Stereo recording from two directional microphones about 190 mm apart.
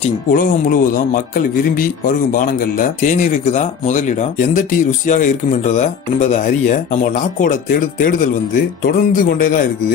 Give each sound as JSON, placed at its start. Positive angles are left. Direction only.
{"t": 0.3, "sound": "speech", "side_deg": 45}